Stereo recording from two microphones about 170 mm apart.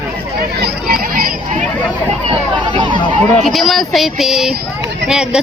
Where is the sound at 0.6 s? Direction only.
60° right (ahead or behind).